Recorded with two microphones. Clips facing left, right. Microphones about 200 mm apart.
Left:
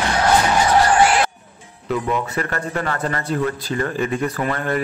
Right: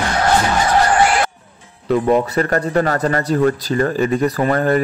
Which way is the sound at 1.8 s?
35° right (ahead or behind).